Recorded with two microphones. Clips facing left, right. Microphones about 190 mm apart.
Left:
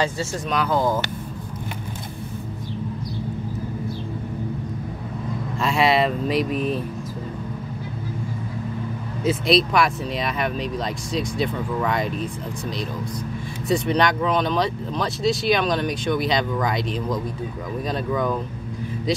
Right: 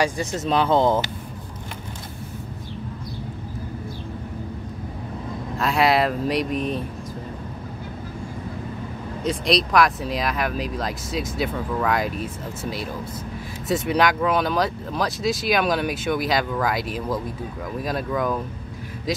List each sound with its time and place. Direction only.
0.0 s speech: 15° right (ahead or behind)
5.6 s speech: centre (ahead or behind)
9.2 s speech: 5° left (ahead or behind)